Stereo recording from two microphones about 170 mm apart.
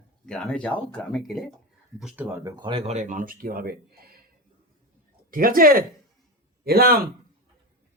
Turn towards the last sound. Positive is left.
turn(degrees=-65)  # may be behind; listen again after turning